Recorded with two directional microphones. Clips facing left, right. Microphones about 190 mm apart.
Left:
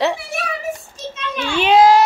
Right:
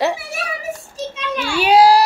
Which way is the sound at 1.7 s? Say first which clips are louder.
Even; 35° right (ahead or behind).